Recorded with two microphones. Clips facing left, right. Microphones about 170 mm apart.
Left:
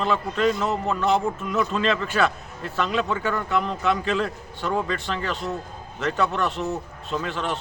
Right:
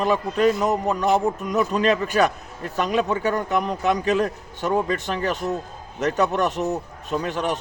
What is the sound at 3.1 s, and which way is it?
Speech, 40° right (ahead or behind).